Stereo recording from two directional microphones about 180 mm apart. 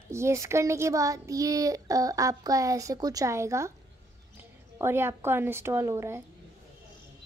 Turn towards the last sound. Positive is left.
turn(degrees=-15)  # may be behind; listen again after turning